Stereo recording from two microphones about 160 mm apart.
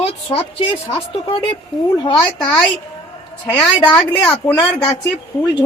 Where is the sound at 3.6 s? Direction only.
5° left (ahead or behind).